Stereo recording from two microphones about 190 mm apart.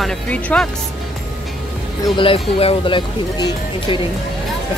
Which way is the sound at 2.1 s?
30° left (ahead or behind).